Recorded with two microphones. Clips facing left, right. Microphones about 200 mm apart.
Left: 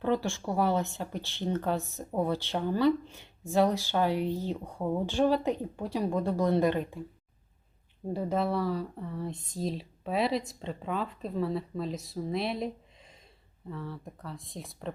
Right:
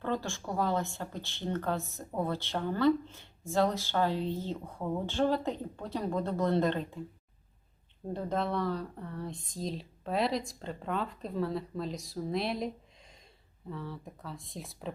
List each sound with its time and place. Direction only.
0.0 s speech: 15° left (ahead or behind)
8.1 s speech: 10° left (ahead or behind)